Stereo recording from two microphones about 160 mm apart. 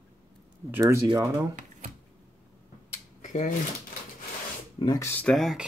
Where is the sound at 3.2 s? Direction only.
50° left (ahead or behind).